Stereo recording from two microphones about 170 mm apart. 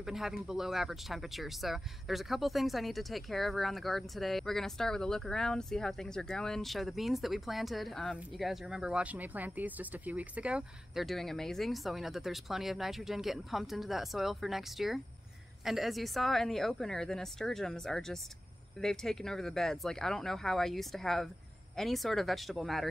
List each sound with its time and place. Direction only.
0.0 s speech: centre (ahead or behind)